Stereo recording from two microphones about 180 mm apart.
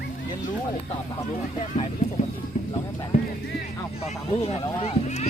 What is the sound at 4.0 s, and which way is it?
Speech, 35° left (ahead or behind).